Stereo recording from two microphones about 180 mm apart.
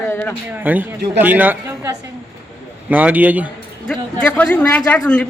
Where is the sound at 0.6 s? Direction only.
10° right (ahead or behind).